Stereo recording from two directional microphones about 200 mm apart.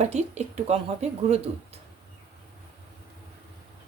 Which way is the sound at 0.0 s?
35° right (ahead or behind).